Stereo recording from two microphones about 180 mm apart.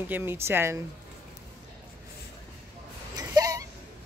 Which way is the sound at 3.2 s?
20° right (ahead or behind).